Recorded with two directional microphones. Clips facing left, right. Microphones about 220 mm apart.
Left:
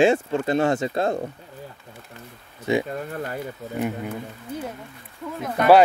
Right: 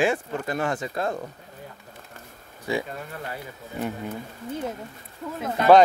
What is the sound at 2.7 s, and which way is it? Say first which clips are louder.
Speech: left 5 dB; 20° left (ahead or behind).